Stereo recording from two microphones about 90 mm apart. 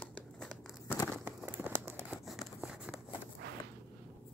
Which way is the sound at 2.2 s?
5° right (ahead or behind).